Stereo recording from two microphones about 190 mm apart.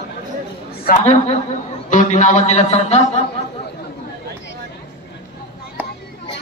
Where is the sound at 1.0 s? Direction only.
35° left (ahead or behind).